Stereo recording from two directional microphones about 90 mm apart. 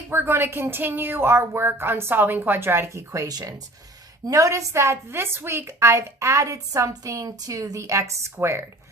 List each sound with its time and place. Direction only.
0.1 s a woman's voice: 25° right (ahead or behind)